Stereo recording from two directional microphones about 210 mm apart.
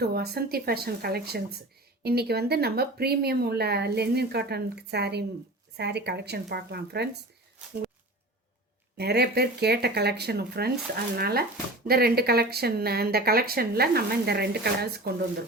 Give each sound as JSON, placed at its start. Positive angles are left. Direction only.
{"t": 0.0, "sound": "speech", "side_deg": -50}
{"t": 9.0, "sound": "speech", "side_deg": -50}